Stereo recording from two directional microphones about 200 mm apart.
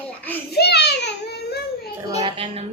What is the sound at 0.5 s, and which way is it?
Speech, 55° left (ahead or behind).